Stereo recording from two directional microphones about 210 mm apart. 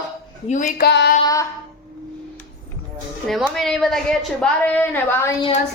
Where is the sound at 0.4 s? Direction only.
40° left (ahead or behind).